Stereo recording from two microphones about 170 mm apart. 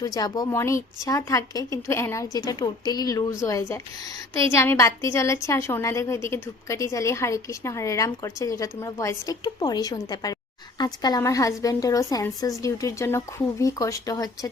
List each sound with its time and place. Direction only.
0.0 s a woman's voice: 20° left (ahead or behind)